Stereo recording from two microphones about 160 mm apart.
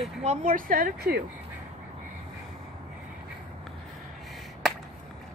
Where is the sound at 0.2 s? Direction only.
45° right (ahead or behind).